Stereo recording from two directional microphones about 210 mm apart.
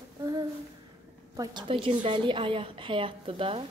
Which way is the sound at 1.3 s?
20° right (ahead or behind).